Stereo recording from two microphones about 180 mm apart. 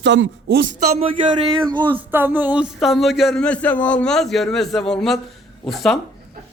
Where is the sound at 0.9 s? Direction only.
30° right (ahead or behind).